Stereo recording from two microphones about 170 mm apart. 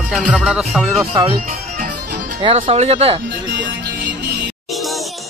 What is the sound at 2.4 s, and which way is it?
Speech, 35° right (ahead or behind).